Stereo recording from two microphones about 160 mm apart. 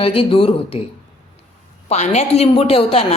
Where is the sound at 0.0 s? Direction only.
35° left (ahead or behind).